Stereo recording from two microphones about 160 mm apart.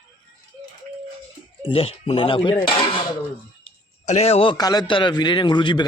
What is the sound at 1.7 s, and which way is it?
Speech, 35° left (ahead or behind).